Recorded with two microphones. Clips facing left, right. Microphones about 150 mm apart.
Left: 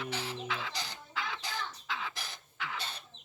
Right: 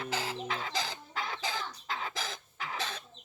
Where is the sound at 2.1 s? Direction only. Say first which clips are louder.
Right 7 dB; 90° right.